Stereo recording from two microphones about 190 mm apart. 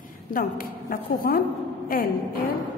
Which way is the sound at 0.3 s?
50° left (ahead or behind).